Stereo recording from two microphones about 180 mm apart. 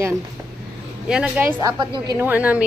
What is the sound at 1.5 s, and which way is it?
Speech, 25° right (ahead or behind).